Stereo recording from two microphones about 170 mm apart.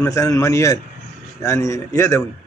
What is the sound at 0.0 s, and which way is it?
A man's voice, 20° left (ahead or behind).